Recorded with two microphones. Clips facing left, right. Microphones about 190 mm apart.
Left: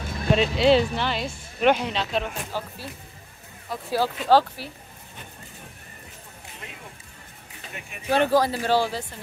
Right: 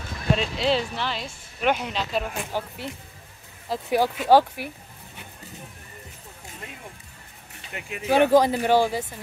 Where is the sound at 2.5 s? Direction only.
20° right (ahead or behind).